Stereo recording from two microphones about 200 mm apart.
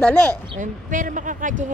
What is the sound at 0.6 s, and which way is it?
A woman's voice, 40° right (ahead or behind).